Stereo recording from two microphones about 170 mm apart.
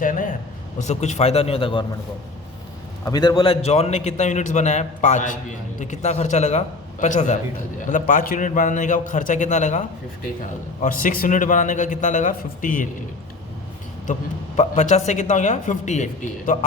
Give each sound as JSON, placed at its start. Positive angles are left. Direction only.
{"t": 0.0, "sound": "a sound", "side_deg": 50}
{"t": 0.8, "sound": "a man's voice", "side_deg": 40}
{"t": 3.0, "sound": "a man's voice", "side_deg": 25}
{"t": 10.8, "sound": "a man's voice", "side_deg": 55}
{"t": 14.1, "sound": "a man's voice", "side_deg": 45}